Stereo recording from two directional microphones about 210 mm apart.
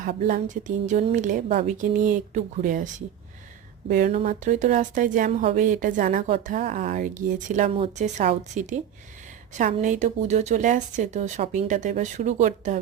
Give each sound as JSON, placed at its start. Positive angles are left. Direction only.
{"t": 0.0, "sound": "a woman's voice", "side_deg": -40}